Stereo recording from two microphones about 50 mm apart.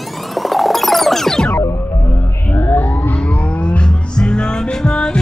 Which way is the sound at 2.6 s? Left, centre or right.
Left.